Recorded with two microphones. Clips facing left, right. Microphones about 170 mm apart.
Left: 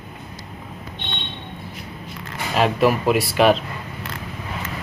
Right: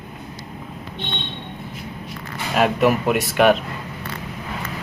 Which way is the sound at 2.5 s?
Centre (ahead or behind).